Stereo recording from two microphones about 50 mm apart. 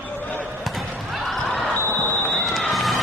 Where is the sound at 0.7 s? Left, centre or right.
Centre.